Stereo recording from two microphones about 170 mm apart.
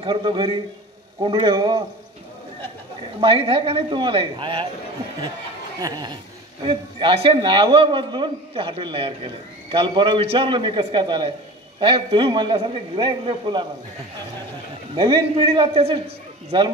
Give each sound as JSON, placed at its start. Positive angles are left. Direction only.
{"t": 0.0, "sound": "a man's voice", "side_deg": -25}
{"t": 3.2, "sound": "a man's voice", "side_deg": -35}
{"t": 5.8, "sound": "a man's voice", "side_deg": -25}
{"t": 15.0, "sound": "a man's voice", "side_deg": -30}